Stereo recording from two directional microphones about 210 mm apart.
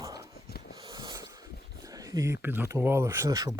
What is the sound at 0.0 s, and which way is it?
Dog, 15° right (ahead or behind).